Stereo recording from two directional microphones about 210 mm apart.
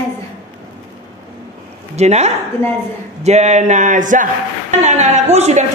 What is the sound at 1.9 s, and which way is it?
A woman's voice, 30° right (ahead or behind).